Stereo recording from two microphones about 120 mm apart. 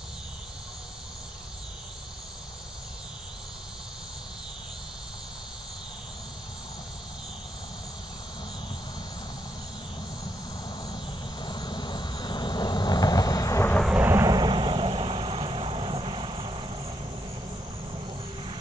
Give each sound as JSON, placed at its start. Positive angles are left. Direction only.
{"t": 10.8, "sound": "vehicle", "side_deg": 35}
{"t": 14.0, "sound": "vehicle", "side_deg": -25}
{"t": 17.9, "sound": "vehicle", "side_deg": -45}